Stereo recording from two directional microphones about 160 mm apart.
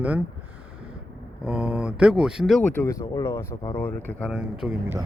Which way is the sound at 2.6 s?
15° left (ahead or behind).